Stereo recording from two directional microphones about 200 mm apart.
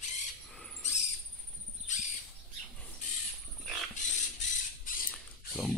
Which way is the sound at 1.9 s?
35° left (ahead or behind).